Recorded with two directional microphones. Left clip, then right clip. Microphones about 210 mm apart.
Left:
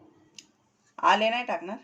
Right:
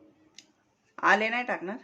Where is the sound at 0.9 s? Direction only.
25° right (ahead or behind).